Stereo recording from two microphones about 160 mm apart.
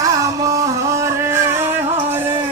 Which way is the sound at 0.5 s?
20° right (ahead or behind).